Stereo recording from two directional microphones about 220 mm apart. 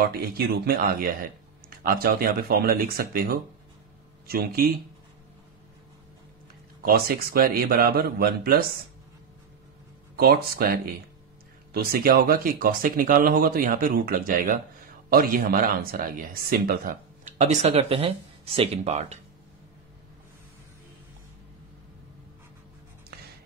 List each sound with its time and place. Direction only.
0.0 s speech: 45° right (ahead or behind)
6.8 s speech: 45° right (ahead or behind)
10.1 s speech: 45° right (ahead or behind)